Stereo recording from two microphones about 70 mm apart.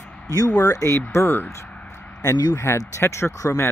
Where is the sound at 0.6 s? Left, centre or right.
Left.